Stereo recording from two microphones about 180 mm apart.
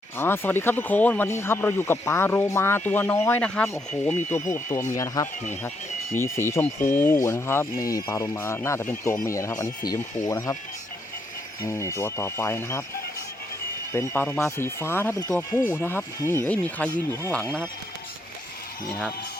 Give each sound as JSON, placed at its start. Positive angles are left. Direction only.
{"t": 0.2, "sound": "speech", "side_deg": 10}
{"t": 11.6, "sound": "speech", "side_deg": 15}
{"t": 13.9, "sound": "speech", "side_deg": 15}